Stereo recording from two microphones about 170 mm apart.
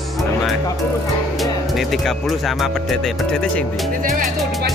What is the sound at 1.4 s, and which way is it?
Speech, centre (ahead or behind).